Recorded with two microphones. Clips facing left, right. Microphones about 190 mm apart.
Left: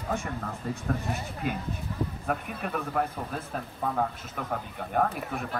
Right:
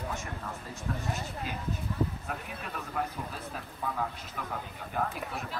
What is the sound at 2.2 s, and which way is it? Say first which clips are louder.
Speech: left 7 dB; 55° left (ahead or behind).